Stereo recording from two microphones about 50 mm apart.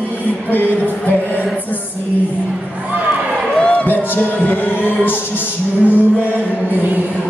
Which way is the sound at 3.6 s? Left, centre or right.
Left.